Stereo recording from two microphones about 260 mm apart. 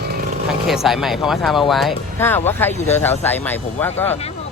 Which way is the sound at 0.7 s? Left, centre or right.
Centre.